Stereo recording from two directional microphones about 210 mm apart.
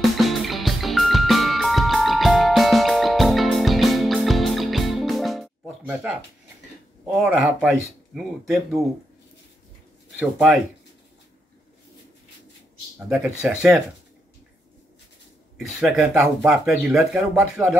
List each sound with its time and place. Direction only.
0.0 s music: centre (ahead or behind)
7.1 s speech: 5° right (ahead or behind)
10.1 s speech: 5° right (ahead or behind)
13.1 s speech: 5° right (ahead or behind)
15.5 s speech: 5° right (ahead or behind)